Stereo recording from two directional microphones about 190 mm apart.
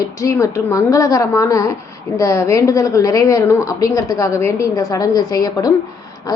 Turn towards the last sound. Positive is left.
turn(degrees=20)  # may be behind; listen again after turning